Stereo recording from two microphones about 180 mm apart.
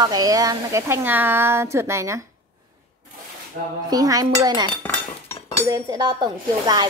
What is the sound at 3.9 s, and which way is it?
Speech, 20° right (ahead or behind).